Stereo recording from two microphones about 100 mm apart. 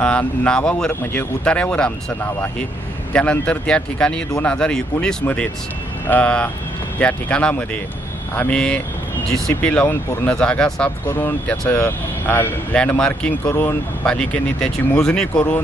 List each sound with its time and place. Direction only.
0.0 s speech: 15° left (ahead or behind)
3.1 s speech: 10° left (ahead or behind)
11.1 s speech: 20° left (ahead or behind)
13.5 s speech: 25° left (ahead or behind)
14.0 s speech: 10° left (ahead or behind)